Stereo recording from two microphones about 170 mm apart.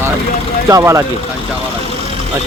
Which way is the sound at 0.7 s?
15° right (ahead or behind).